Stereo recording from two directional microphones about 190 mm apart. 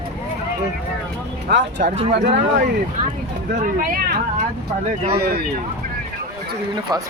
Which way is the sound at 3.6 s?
50° right (ahead or behind).